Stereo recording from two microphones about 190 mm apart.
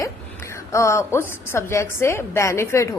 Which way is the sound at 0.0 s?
15° left (ahead or behind).